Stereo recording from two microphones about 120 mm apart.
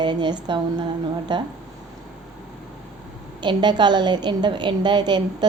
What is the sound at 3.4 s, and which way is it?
A woman's voice, 40° right (ahead or behind).